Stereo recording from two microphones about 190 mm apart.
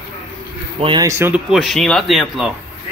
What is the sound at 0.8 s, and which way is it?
Speech, 25° right (ahead or behind).